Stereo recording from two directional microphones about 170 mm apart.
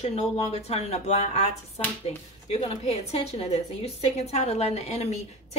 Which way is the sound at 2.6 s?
35° left (ahead or behind).